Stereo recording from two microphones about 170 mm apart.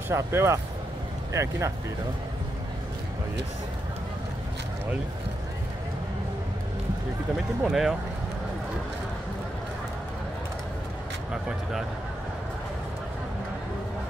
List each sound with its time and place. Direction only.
0.1 s speech: 15° right (ahead or behind)
7.6 s speech: centre (ahead or behind)